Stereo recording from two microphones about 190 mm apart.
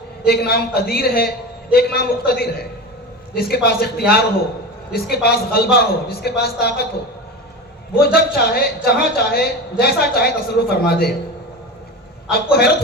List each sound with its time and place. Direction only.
0.3 s a woman's voice: 55° left (ahead or behind)
7.9 s a woman's voice: 55° left (ahead or behind)
12.3 s a woman's voice: 55° left (ahead or behind)